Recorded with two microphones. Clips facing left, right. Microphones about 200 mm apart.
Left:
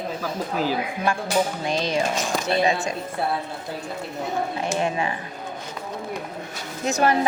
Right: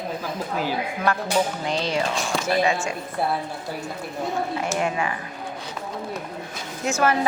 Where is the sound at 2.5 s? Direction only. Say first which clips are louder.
Even; 35° left (ahead or behind).